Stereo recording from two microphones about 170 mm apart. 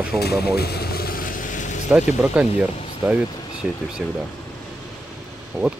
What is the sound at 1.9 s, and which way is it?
Speech, 5° right (ahead or behind).